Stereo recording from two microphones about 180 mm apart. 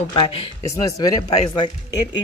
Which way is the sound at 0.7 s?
20° left (ahead or behind).